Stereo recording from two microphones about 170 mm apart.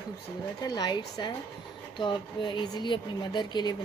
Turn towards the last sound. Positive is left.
turn(degrees=25)  # may be behind; listen again after turning